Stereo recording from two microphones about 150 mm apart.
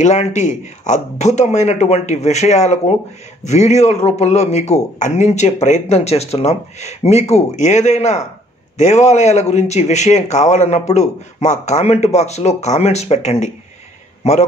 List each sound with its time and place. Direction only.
0.0 s speech: 50° left (ahead or behind)